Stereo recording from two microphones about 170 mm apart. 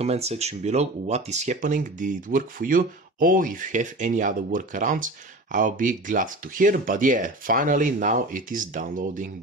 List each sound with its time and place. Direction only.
0.0 s speech: 40° right (ahead or behind)